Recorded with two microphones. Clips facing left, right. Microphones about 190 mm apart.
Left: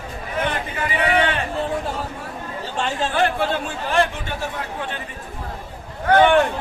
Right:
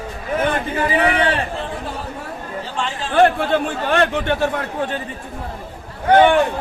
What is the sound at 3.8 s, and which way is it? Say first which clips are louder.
Speech: right 2 dB; 65° right (ahead or behind).